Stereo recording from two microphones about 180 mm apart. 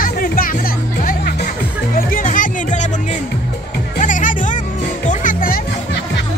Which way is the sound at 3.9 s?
45° left (ahead or behind).